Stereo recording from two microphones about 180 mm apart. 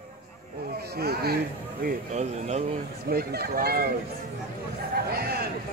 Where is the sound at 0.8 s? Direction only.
60° right (ahead or behind).